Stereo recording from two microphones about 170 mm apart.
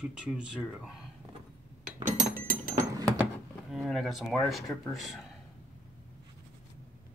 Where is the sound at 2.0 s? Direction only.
45° right (ahead or behind).